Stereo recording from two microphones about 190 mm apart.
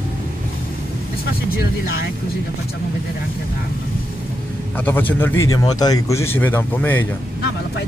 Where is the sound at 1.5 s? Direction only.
55° left (ahead or behind).